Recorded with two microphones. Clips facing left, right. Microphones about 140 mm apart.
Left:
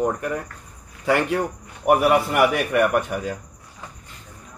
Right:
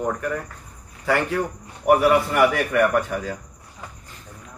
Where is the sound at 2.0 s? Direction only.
15° left (ahead or behind).